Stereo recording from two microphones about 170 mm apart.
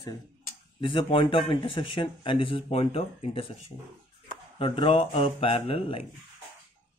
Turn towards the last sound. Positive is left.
turn(degrees=30)  # may be behind; listen again after turning